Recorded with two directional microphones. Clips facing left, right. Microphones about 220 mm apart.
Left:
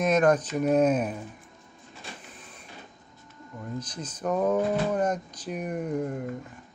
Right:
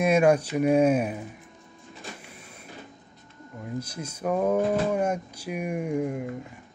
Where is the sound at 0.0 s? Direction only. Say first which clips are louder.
Right 2 dB; 10° right (ahead or behind).